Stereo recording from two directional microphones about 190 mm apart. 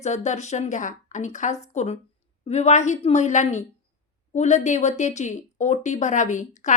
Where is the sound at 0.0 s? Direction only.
40° left (ahead or behind).